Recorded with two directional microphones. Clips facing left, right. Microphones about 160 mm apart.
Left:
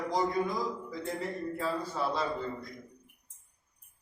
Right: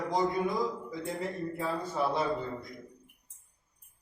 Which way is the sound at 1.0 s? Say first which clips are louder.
Right 1 dB; 15° right (ahead or behind).